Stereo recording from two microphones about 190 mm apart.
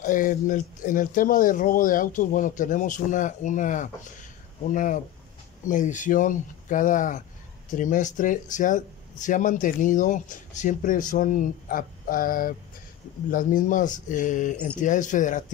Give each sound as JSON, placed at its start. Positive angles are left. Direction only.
{"t": 0.0, "sound": "speech", "side_deg": 45}